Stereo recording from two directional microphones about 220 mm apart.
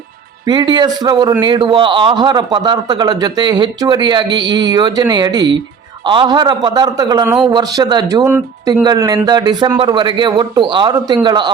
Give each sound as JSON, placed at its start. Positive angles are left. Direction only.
{"t": 0.4, "sound": "a man's voice", "side_deg": -20}